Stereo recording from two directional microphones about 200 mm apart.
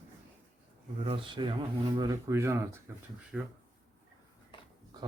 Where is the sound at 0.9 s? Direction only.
30° right (ahead or behind); by 3.5 s centre (ahead or behind).